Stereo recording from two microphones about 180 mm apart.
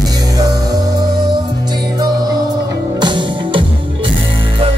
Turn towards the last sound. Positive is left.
turn(degrees=-25)  # may be behind; listen again after turning